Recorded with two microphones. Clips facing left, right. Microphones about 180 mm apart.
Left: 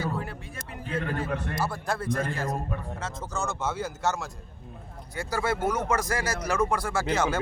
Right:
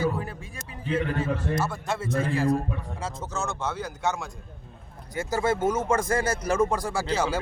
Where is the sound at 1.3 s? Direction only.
60° left (ahead or behind).